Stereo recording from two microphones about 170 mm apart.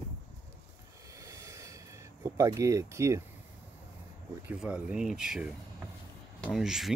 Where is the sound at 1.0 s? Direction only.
20° right (ahead or behind).